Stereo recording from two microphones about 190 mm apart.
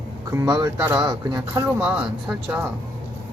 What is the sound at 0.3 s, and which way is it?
Speech, 20° right (ahead or behind).